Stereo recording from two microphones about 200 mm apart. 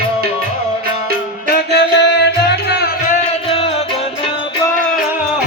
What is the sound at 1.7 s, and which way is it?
Music, 60° left (ahead or behind).